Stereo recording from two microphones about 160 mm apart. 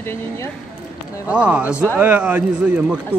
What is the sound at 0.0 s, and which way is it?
Speech, 15° left (ahead or behind).